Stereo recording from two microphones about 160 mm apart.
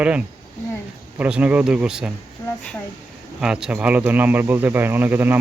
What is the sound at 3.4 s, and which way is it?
A man's voice, 5° right (ahead or behind).